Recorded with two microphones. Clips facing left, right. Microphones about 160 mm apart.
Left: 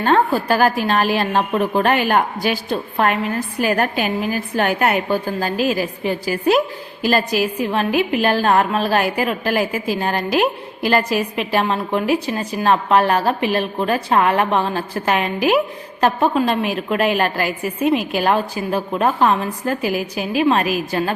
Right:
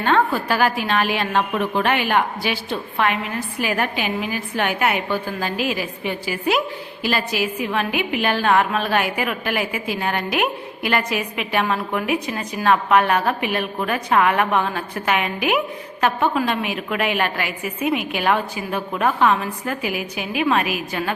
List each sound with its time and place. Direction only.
0.0 s a woman's voice: 40° left (ahead or behind)